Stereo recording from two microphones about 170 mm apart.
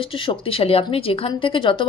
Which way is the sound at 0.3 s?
35° left (ahead or behind).